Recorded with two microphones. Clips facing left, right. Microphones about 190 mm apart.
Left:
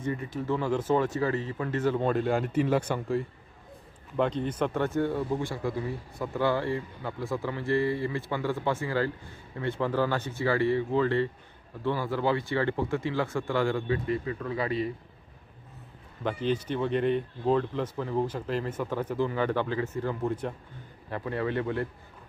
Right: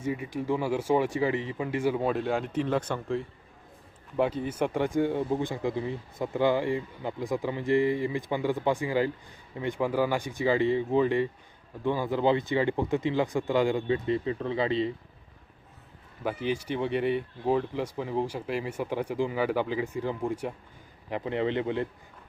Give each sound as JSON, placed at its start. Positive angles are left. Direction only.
{"t": 0.0, "sound": "speech", "side_deg": -10}
{"t": 4.2, "sound": "speech", "side_deg": -10}
{"t": 16.4, "sound": "speech", "side_deg": -10}